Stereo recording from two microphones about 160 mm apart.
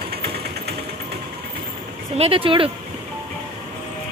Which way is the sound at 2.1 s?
35° right (ahead or behind).